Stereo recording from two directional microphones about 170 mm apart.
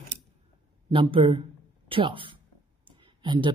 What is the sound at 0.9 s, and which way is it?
Speech, 30° right (ahead or behind).